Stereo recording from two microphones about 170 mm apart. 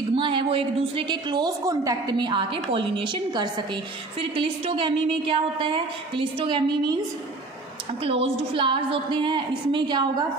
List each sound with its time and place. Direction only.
0.1 s a woman's voice: 30° right (ahead or behind)
8.0 s a woman's voice: 35° right (ahead or behind)